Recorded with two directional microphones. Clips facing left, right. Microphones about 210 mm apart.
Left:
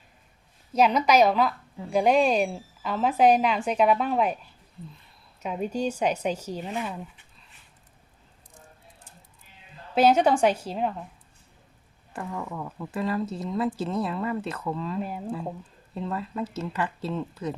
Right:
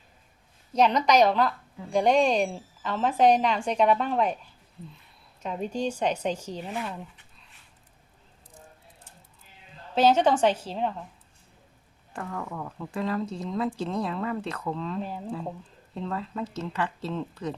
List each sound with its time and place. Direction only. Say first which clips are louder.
0.7 s a woman's voice: left 1 dB; 10° left (ahead or behind)
5.4 s a woman's voice: left 2 dB; 10° left (ahead or behind)
9.9 s a woman's voice: left 1 dB; 10° left (ahead or behind)
12.1 s a woman's voice: left 1 dB; 10° left (ahead or behind)